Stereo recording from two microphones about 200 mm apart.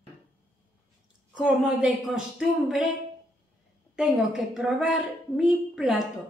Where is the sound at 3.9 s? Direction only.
Centre (ahead or behind).